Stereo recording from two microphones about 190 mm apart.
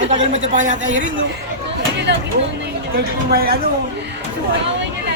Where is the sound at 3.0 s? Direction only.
50° right (ahead or behind).